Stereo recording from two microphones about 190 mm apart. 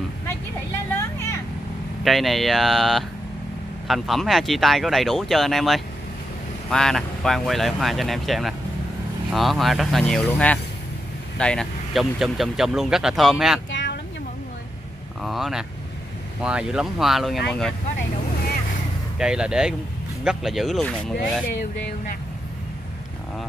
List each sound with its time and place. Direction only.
2.0 s speech: centre (ahead or behind)
13.7 s a sound: 70° left (ahead or behind)
15.2 s speech: centre (ahead or behind)
19.1 s speech: 5° right (ahead or behind)